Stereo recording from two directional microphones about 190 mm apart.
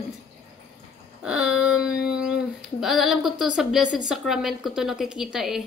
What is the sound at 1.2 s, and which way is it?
Speech, 5° right (ahead or behind).